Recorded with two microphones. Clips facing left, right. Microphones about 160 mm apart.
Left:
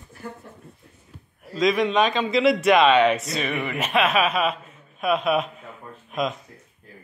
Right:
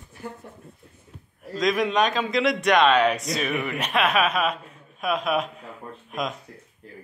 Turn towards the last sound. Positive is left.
turn(degrees=0)  # may be behind; listen again after turning